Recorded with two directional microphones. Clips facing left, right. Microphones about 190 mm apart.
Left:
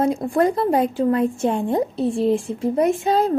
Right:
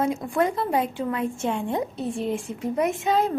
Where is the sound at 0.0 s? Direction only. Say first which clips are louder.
Left 5 dB; 35° left (ahead or behind).